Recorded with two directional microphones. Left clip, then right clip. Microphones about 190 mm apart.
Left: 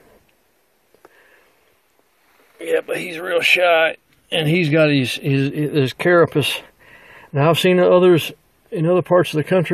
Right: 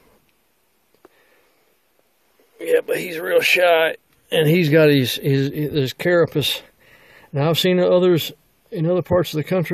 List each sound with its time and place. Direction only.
2.6 s speech: 30° right (ahead or behind); by 9.7 s 15° right (ahead or behind)